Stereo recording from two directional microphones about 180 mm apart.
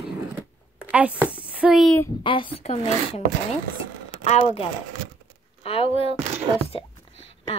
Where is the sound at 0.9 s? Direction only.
10° right (ahead or behind).